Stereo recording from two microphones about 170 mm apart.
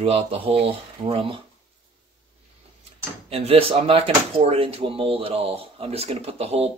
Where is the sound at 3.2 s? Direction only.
35° right (ahead or behind).